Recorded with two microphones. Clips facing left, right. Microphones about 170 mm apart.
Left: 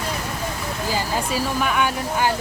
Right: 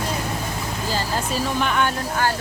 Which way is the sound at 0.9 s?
10° left (ahead or behind).